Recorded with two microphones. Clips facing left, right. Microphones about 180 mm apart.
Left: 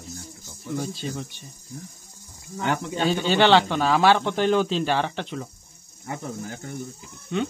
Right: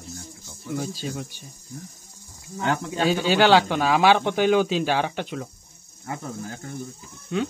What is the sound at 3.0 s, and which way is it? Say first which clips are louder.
Speech: right 1 dB; 10° right (ahead or behind).